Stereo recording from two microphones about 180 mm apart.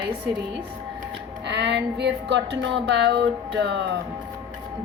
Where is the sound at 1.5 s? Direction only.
75° right (ahead or behind).